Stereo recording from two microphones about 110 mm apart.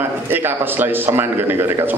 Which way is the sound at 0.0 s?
20° right (ahead or behind).